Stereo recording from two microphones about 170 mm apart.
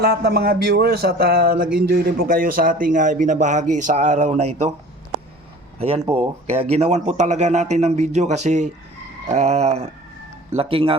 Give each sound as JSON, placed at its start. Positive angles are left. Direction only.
{"t": 0.0, "sound": "speech", "side_deg": -70}
{"t": 6.1, "sound": "speech", "side_deg": -35}
{"t": 9.3, "sound": "a sound", "side_deg": -40}